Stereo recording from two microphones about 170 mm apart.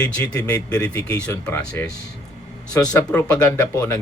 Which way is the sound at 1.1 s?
10° left (ahead or behind).